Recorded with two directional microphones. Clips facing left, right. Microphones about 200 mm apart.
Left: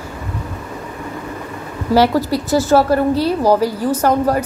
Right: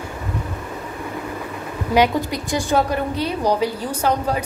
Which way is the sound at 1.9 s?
15° right (ahead or behind).